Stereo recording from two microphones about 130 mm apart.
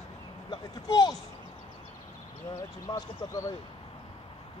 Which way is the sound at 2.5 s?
25° left (ahead or behind).